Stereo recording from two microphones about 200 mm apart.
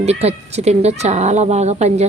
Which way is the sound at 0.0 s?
30° right (ahead or behind).